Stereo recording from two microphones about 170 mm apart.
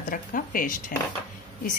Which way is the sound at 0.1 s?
55° left (ahead or behind).